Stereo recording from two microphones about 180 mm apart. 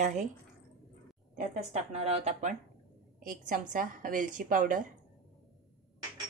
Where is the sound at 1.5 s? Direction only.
40° right (ahead or behind).